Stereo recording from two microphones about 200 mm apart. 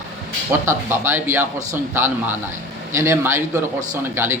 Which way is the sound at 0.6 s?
10° right (ahead or behind).